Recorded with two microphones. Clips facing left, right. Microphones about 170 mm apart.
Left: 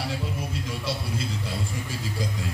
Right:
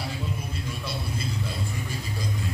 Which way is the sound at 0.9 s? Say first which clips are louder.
Left 6 dB; 90° left.